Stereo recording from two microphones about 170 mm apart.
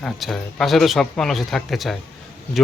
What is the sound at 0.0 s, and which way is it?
A man's voice, centre (ahead or behind).